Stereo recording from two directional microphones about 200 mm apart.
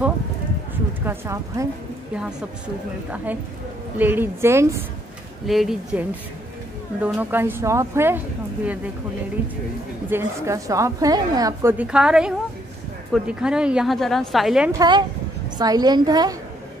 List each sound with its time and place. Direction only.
1.0 s a woman's voice: 15° right (ahead or behind)
4.0 s a woman's voice: 10° right (ahead or behind)
5.5 s a woman's voice: centre (ahead or behind)
10.0 s a woman's voice: 15° right (ahead or behind)
11.8 s a woman's voice: 5° right (ahead or behind)
14.7 s a woman's voice: 20° right (ahead or behind)